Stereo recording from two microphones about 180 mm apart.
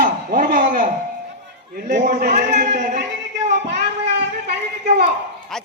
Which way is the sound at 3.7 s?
70° right (ahead or behind).